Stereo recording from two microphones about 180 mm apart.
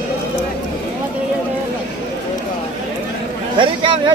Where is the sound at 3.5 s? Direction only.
30° right (ahead or behind).